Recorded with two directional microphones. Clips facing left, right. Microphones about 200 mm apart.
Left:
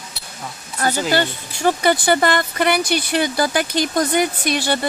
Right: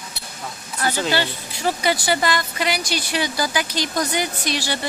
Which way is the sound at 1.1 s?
50° left (ahead or behind).